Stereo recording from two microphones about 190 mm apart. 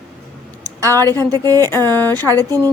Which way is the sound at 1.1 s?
20° right (ahead or behind).